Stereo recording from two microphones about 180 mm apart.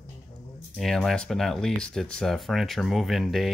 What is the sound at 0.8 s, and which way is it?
Speech, centre (ahead or behind).